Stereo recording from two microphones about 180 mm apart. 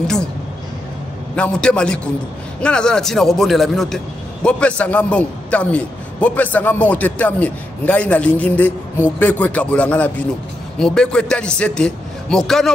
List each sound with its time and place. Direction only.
0.0 s speech: 5° left (ahead or behind)
1.3 s a man's voice: 5° left (ahead or behind)